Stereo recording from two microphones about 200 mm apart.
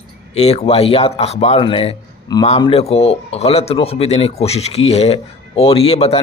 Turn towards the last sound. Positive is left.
turn(degrees=30)  # may be behind; listen again after turning